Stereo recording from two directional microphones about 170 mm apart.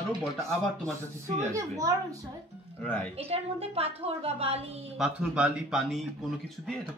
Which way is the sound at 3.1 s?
35° right (ahead or behind).